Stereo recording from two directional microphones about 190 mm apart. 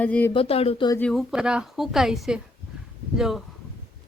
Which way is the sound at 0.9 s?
5° left (ahead or behind).